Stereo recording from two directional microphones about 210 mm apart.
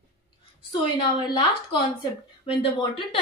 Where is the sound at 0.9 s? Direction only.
20° left (ahead or behind).